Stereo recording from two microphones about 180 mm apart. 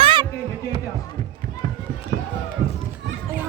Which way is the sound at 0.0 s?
30° right (ahead or behind).